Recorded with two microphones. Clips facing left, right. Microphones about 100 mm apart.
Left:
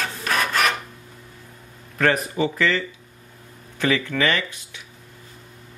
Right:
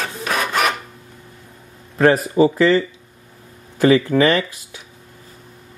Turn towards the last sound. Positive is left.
turn(degrees=-35)  # may be behind; listen again after turning